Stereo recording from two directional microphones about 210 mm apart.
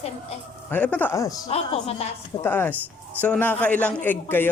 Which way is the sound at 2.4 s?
10° left (ahead or behind).